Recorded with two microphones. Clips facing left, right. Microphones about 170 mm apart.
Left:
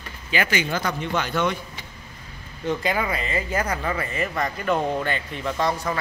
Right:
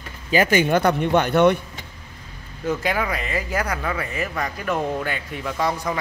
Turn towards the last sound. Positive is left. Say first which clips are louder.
# right 1 dB
turn(degrees=-10)  # may be behind; listen again after turning